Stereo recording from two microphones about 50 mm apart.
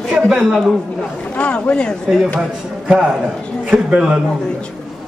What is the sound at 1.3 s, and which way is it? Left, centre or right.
Speech, left.